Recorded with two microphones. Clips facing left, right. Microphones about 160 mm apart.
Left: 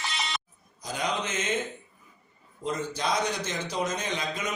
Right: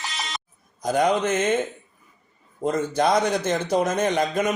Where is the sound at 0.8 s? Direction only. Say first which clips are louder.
Right 10 dB; 55° right (ahead or behind).